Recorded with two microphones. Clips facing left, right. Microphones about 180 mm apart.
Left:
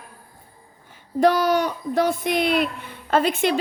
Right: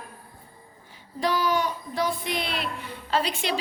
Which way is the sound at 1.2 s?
45° left (ahead or behind).